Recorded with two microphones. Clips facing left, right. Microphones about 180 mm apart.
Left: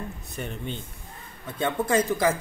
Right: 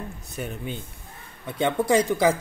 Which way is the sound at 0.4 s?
5° right (ahead or behind).